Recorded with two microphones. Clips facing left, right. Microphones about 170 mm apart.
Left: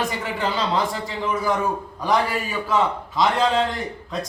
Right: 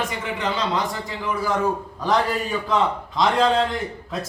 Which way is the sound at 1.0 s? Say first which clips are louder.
Left 2 dB; 20° left (ahead or behind).